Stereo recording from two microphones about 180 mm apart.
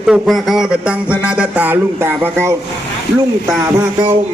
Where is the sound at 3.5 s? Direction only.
20° right (ahead or behind).